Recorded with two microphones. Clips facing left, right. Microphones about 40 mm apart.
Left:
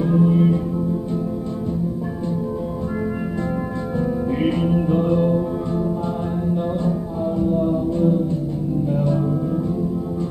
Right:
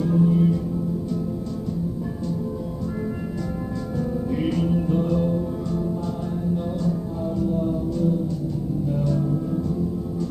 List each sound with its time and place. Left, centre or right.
0.0 s music: left
4.4 s music: left